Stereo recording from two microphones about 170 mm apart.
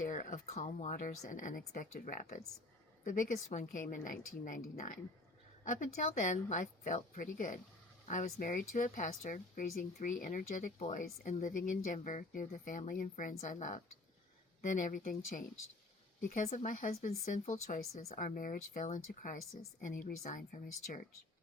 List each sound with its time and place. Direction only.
0.1 s a sound: 50° left (ahead or behind)
0.5 s speech: 40° left (ahead or behind)
0.9 s speech: 50° left (ahead or behind)